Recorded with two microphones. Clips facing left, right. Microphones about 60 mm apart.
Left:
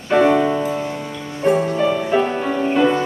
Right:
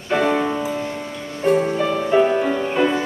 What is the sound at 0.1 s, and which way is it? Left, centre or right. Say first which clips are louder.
Music: left 4 dB; centre.